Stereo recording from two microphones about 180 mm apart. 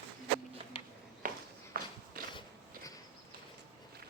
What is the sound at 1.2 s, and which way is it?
Walk, 50° right (ahead or behind).